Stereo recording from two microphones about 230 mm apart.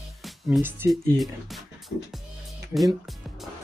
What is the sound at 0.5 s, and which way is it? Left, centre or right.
Speech, centre.